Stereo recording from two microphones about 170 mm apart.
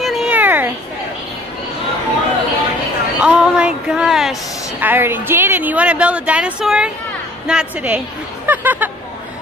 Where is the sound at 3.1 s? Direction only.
5° right (ahead or behind).